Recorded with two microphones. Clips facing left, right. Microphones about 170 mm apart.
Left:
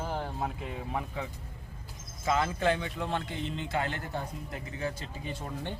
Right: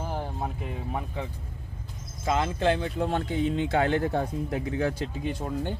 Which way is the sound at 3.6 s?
65° right (ahead or behind).